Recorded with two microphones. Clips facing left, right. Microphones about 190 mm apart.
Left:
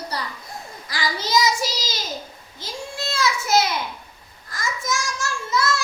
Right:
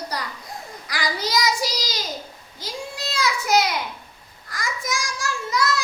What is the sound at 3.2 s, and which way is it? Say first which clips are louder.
Speech: even; 15° right (ahead or behind).